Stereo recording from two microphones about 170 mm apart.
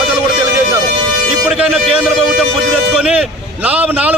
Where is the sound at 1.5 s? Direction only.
Centre (ahead or behind).